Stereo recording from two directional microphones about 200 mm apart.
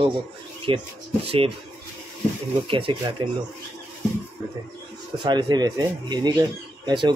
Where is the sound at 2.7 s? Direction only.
25° right (ahead or behind).